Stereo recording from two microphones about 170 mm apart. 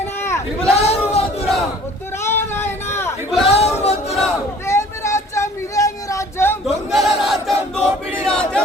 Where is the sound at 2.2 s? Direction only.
15° left (ahead or behind).